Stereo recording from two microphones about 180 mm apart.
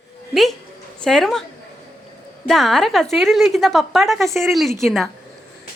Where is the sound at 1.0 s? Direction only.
Centre (ahead or behind).